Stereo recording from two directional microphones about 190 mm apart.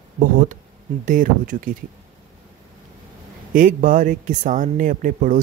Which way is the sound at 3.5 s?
45° right (ahead or behind).